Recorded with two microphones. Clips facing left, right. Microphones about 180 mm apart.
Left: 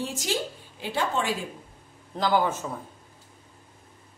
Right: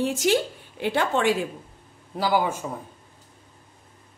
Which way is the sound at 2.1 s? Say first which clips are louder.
Right 1 dB; 10° right (ahead or behind).